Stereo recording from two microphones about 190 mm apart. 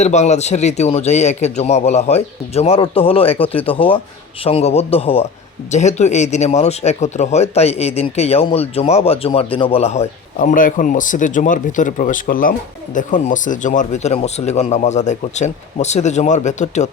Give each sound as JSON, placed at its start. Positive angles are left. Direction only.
{"t": 0.0, "sound": "speech", "side_deg": 35}